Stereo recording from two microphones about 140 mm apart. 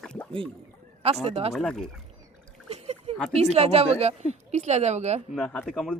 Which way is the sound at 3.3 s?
50° right (ahead or behind).